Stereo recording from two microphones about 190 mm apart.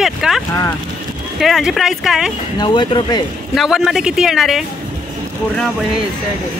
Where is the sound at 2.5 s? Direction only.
25° left (ahead or behind).